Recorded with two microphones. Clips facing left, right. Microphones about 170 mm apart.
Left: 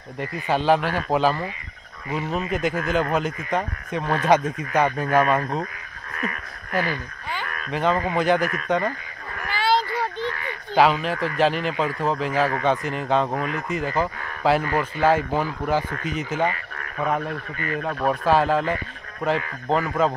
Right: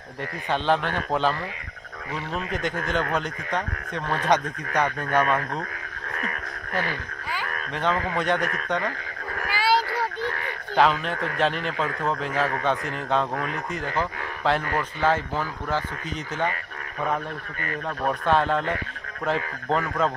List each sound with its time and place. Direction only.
0.5 s a man's voice: 5° left (ahead or behind)
7.7 s a man's voice: 5° left (ahead or behind)
9.5 s a sound: 10° right (ahead or behind)
10.8 s a man's voice: 5° left (ahead or behind)
17.8 s a man's voice: 5° left (ahead or behind)